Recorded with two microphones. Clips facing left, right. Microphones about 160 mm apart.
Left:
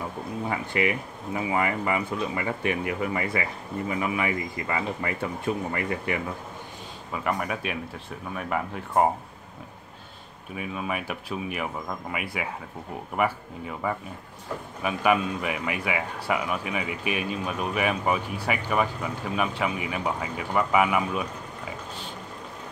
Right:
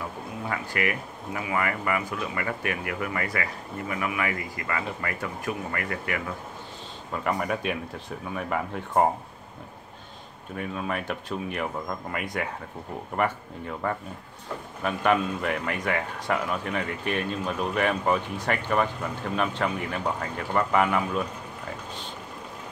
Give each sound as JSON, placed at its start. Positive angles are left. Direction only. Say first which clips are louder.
{"t": 0.5, "sound": "speech", "louder": "left 2 dB", "side_deg": 20}
{"t": 7.1, "sound": "a man's voice", "louder": "right 1 dB", "side_deg": 0}
{"t": 10.5, "sound": "a man's voice", "louder": "even", "side_deg": 5}